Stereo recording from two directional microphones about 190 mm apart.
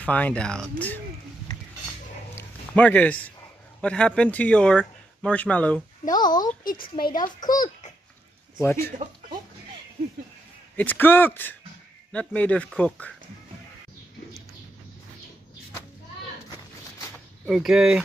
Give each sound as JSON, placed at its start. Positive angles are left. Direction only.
{"t": 0.0, "sound": "speech", "side_deg": 10}
{"t": 2.3, "sound": "a sound", "side_deg": 10}
{"t": 3.8, "sound": "speech", "side_deg": 5}
{"t": 6.1, "sound": "speech", "side_deg": 20}
{"t": 6.6, "sound": "a woman's voice", "side_deg": 50}
{"t": 7.3, "sound": "speech", "side_deg": 20}
{"t": 10.8, "sound": "speech", "side_deg": 10}
{"t": 17.5, "sound": "speech", "side_deg": 0}